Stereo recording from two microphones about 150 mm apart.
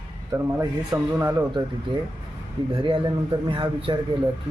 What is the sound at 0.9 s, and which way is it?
Speech, 15° right (ahead or behind).